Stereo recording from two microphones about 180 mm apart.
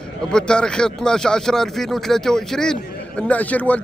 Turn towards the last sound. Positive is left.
turn(degrees=10)  # may be behind; listen again after turning